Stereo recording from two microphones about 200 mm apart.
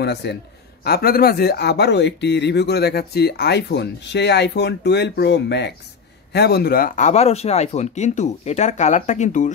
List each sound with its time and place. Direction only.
0.0 s speech: 55° left (ahead or behind); by 9.5 s 35° left (ahead or behind)